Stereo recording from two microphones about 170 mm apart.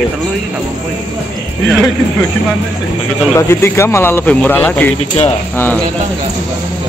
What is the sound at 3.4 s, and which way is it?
Speech, 15° left (ahead or behind).